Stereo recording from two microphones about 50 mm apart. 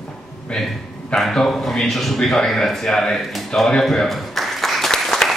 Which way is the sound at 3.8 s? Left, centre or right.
Centre.